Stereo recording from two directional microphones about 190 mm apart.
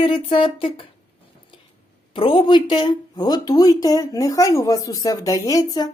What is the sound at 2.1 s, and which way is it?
Speech, 25° left (ahead or behind).